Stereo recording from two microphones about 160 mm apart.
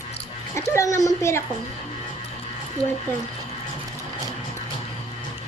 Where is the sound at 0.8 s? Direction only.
20° left (ahead or behind).